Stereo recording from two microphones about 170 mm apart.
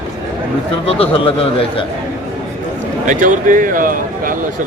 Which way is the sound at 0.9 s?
35° left (ahead or behind).